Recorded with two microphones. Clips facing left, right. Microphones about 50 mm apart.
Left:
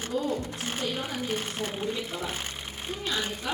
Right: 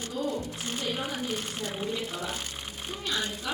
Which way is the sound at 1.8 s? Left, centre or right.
Centre.